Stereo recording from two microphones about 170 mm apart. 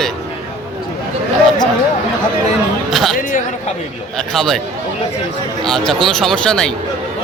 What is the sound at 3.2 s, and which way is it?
Speech, 50° left (ahead or behind).